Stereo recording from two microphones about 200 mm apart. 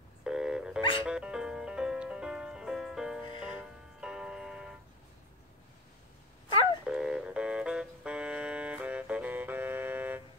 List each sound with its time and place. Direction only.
0.2 s telephone dialing: 5° right (ahead or behind)
1.0 s music: 5° right (ahead or behind)
6.9 s music: 5° right (ahead or behind)